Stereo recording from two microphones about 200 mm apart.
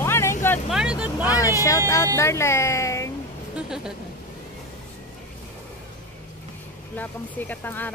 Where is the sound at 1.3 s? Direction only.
15° left (ahead or behind).